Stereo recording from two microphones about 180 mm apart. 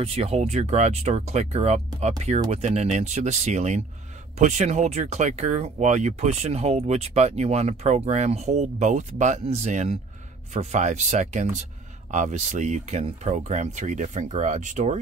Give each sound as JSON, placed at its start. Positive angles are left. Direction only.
{"t": 0.0, "sound": "speech", "side_deg": -35}